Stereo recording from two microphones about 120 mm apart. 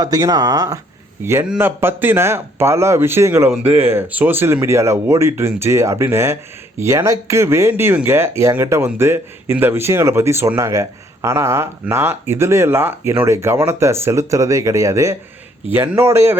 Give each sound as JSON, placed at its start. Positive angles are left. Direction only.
{"t": 0.0, "sound": "speech", "side_deg": -30}
{"t": 3.6, "sound": "speech", "side_deg": -60}
{"t": 3.8, "sound": "speech", "side_deg": -15}